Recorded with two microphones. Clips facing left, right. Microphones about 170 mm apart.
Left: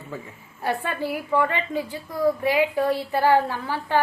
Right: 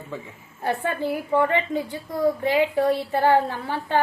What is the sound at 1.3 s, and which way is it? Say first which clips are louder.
A woman's voice: right 2 dB; 20° right (ahead or behind).